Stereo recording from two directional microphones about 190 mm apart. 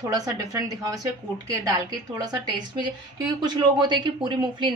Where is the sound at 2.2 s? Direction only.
20° right (ahead or behind).